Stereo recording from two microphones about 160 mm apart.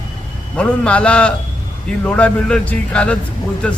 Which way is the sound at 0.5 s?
5° left (ahead or behind).